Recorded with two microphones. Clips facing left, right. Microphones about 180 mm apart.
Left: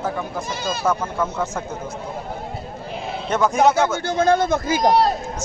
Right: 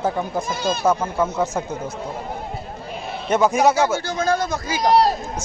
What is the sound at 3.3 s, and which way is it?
Speech, 10° right (ahead or behind).